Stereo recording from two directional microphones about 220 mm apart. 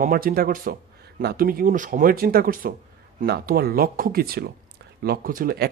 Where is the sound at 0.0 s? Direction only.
40° right (ahead or behind).